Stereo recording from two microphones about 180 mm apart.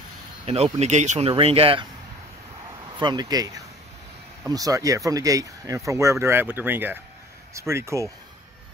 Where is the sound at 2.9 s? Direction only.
25° right (ahead or behind).